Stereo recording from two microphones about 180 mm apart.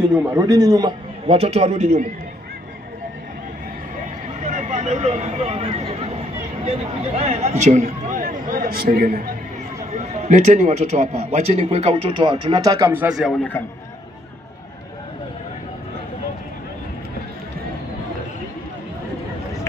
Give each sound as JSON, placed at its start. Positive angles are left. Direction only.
{"t": 0.1, "sound": "a man's voice", "side_deg": -15}
{"t": 1.2, "sound": "a man's voice", "side_deg": -35}
{"t": 4.4, "sound": "vehicle", "side_deg": -40}
{"t": 7.2, "sound": "a man's voice", "side_deg": -35}
{"t": 9.9, "sound": "a man's voice", "side_deg": -40}